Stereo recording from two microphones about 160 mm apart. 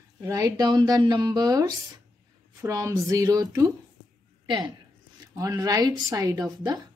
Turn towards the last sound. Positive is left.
turn(degrees=-25)  # may be behind; listen again after turning